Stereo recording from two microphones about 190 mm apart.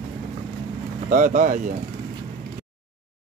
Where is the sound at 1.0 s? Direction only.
45° right (ahead or behind).